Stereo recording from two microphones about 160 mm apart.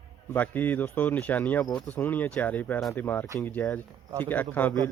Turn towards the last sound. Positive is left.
turn(degrees=10)  # may be behind; listen again after turning